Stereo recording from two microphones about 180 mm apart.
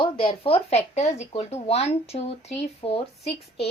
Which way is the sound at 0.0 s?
30° left (ahead or behind).